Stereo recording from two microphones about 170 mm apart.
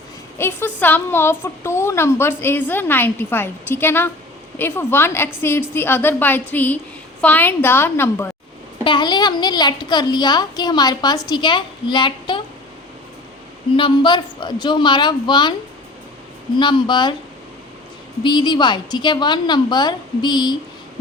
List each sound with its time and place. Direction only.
0.3 s a woman's voice: 10° left (ahead or behind)
8.8 s a woman's voice: 25° left (ahead or behind)
13.7 s a woman's voice: 30° left (ahead or behind)
16.6 s a woman's voice: 30° left (ahead or behind)
18.2 s a woman's voice: 25° left (ahead or behind)